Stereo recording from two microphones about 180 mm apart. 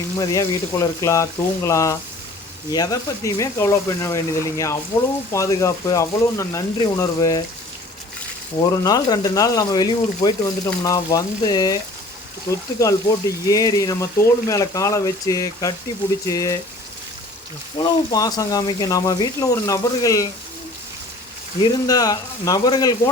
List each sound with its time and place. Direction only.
0.2 s speech: 20° left (ahead or behind)
8.8 s speech: 20° left (ahead or behind)
17.7 s speech: 20° left (ahead or behind)
21.6 s speech: 20° left (ahead or behind)